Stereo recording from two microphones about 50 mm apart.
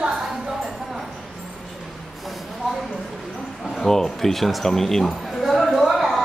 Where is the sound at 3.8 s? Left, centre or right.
Centre.